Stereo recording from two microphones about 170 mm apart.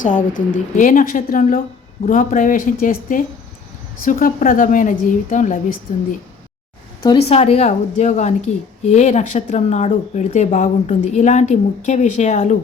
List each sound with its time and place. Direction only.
0.0 s a woman's voice: 50° left (ahead or behind)
7.3 s a woman's voice: 40° left (ahead or behind)